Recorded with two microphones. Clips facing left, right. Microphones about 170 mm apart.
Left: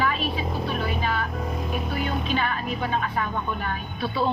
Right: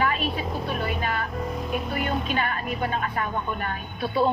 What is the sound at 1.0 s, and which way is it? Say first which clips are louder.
Speech: left 1 dB; 50° right (ahead or behind).